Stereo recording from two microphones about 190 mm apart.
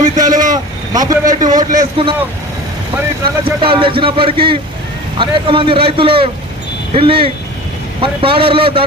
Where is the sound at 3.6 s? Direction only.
25° right (ahead or behind).